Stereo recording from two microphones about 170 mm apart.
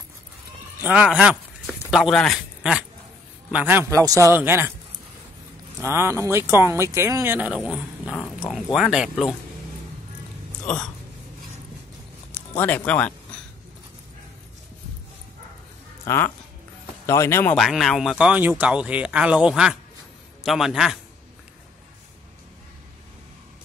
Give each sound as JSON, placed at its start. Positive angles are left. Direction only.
{"t": 0.8, "sound": "speech", "side_deg": -5}
{"t": 5.8, "sound": "speech", "side_deg": -15}
{"t": 12.5, "sound": "speech", "side_deg": 10}
{"t": 16.1, "sound": "speech", "side_deg": 15}
{"t": 17.6, "sound": "speech", "side_deg": 0}